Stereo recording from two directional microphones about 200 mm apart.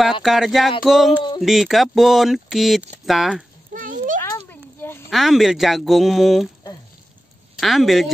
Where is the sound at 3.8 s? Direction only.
40° right (ahead or behind).